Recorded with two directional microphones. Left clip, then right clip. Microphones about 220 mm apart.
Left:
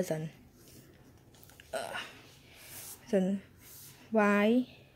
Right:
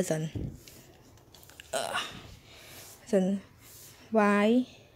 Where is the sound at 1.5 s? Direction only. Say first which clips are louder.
Right 6 dB; 10° right (ahead or behind).